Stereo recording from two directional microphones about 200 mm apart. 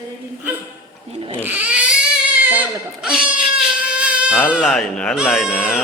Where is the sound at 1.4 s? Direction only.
10° right (ahead or behind).